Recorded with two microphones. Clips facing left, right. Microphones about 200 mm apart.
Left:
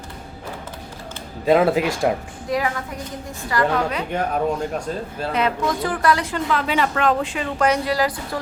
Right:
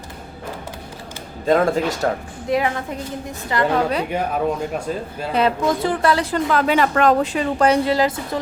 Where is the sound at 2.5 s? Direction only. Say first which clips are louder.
Right 3 dB; 25° right (ahead or behind).